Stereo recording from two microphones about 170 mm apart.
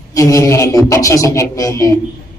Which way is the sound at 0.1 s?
20° left (ahead or behind).